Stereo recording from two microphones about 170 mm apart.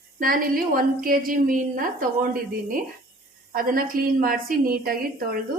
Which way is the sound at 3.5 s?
55° right (ahead or behind).